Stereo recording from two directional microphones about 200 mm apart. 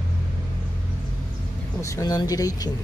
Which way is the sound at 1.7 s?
15° left (ahead or behind).